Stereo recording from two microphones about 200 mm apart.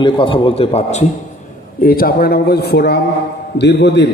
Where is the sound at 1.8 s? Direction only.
45° left (ahead or behind).